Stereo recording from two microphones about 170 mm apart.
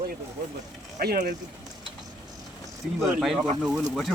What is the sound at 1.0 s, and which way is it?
Speech, 60° right (ahead or behind).